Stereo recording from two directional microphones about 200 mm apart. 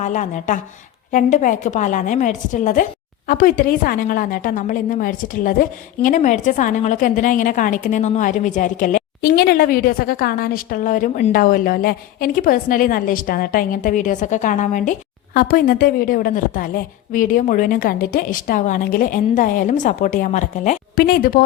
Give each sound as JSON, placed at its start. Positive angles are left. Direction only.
{"t": 0.0, "sound": "a woman's voice", "side_deg": 40}